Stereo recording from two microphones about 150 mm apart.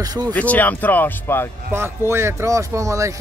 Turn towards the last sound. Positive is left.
turn(degrees=-20)  # may be behind; listen again after turning